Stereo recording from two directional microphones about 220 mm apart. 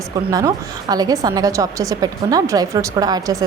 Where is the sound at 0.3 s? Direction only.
15° right (ahead or behind).